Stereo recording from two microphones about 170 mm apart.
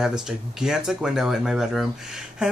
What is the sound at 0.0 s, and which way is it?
Speech, 5° right (ahead or behind).